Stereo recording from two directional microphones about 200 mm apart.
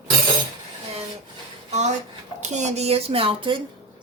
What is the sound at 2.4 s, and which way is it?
A woman's voice, 35° right (ahead or behind).